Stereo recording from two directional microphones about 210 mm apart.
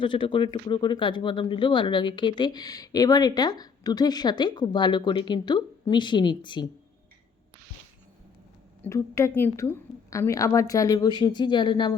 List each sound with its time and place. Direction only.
0.0 s speech: 25° left (ahead or behind)
8.8 s a woman's voice: 15° left (ahead or behind)